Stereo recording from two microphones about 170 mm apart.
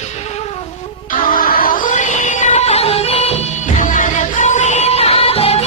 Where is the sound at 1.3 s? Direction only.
55° left (ahead or behind).